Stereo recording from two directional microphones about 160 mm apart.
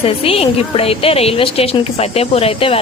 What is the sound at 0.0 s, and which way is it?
A woman's voice, 35° left (ahead or behind).